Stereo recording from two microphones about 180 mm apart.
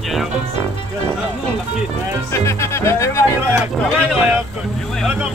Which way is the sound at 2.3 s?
15° left (ahead or behind).